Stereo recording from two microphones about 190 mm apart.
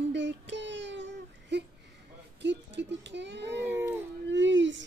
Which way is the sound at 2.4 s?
65° right (ahead or behind).